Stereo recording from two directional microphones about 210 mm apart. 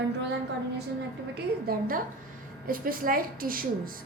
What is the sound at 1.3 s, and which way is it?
A woman's voice, 45° right (ahead or behind).